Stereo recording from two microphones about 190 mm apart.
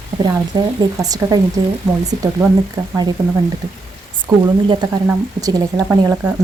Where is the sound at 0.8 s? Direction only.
20° right (ahead or behind).